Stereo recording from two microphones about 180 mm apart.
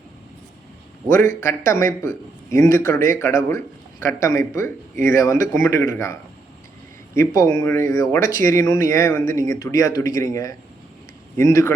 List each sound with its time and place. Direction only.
1.1 s a man's voice: 15° left (ahead or behind)
2.9 s speech: 50° right (ahead or behind)
3.2 s a man's voice: 15° left (ahead or behind)